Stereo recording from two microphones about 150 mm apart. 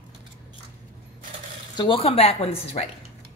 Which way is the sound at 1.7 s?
35° left (ahead or behind).